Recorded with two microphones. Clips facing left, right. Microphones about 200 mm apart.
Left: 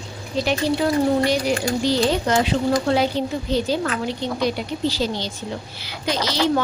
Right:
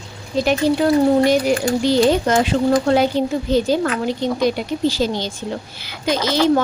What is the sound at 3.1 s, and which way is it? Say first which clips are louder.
Speech: right 5 dB; 45° right (ahead or behind).